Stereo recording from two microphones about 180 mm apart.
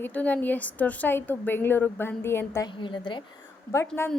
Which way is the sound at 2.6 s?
25° left (ahead or behind).